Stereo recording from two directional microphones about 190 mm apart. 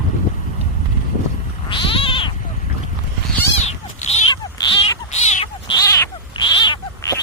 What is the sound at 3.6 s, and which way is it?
Goat, 35° left (ahead or behind).